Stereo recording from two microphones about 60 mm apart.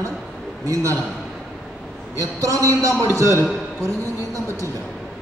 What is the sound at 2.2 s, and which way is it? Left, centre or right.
A man's voice, right.